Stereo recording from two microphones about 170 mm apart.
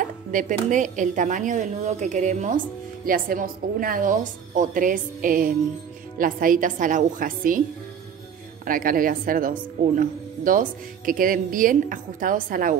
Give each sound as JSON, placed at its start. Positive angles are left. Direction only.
{"t": 0.0, "sound": "speech", "side_deg": -50}
{"t": 8.6, "sound": "a woman's voice", "side_deg": -55}